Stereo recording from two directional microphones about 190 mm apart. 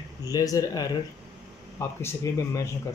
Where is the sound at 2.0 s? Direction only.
15° left (ahead or behind).